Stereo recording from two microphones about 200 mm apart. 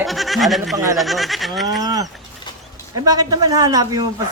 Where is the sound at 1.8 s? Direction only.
20° right (ahead or behind).